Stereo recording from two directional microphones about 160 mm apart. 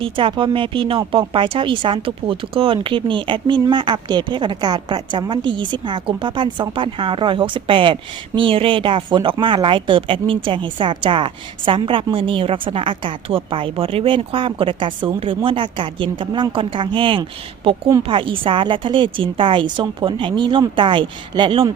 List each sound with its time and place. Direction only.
0.0 s speech: 30° right (ahead or behind)